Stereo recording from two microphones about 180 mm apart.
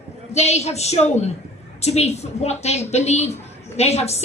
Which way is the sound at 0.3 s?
35° left (ahead or behind).